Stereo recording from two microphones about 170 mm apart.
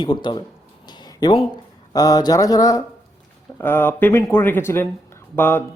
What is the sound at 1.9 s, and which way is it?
Speech, 20° left (ahead or behind).